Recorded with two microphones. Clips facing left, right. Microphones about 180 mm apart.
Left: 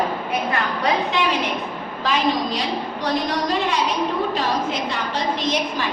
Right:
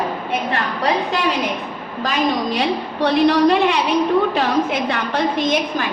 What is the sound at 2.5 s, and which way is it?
A woman's voice, 65° right (ahead or behind).